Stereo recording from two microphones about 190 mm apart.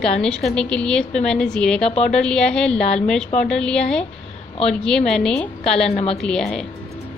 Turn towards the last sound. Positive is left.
turn(degrees=5)  # may be behind; listen again after turning